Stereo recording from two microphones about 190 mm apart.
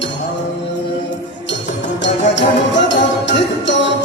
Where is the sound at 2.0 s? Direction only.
70° left (ahead or behind).